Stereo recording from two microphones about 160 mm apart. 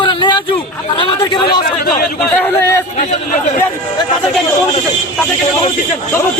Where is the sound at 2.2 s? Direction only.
10° left (ahead or behind).